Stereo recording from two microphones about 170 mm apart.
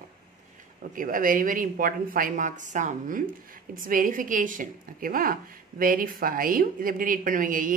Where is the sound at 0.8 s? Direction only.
55° right (ahead or behind).